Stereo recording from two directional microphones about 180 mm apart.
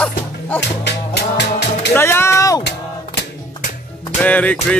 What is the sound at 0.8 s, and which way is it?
Music, 70° left (ahead or behind).